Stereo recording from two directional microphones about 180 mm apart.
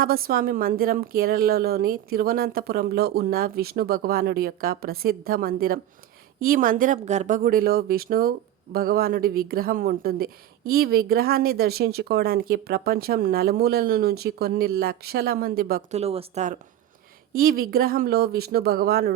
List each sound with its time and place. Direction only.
0.0 s speech: 55° right (ahead or behind)
15.9 s speech: 35° right (ahead or behind)
17.3 s speech: 55° right (ahead or behind)